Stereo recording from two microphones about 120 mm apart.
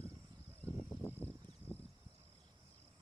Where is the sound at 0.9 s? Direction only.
15° left (ahead or behind).